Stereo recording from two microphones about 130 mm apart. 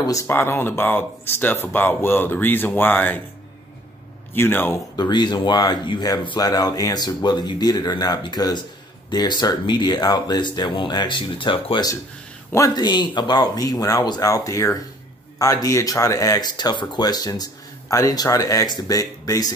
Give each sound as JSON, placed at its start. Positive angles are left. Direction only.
{"t": 0.0, "sound": "speech", "side_deg": 25}
{"t": 4.3, "sound": "speech", "side_deg": 15}
{"t": 4.9, "sound": "speech", "side_deg": 35}